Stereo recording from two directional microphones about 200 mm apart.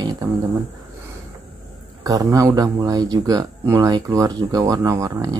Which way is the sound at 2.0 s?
20° right (ahead or behind).